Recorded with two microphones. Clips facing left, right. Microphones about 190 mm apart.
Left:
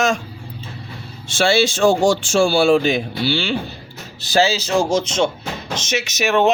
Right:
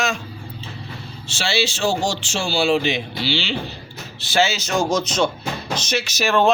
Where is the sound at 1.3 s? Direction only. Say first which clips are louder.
Left 7 dB; 50° left (ahead or behind).